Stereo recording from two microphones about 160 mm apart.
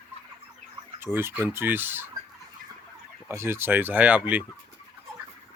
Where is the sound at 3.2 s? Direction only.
15° right (ahead or behind).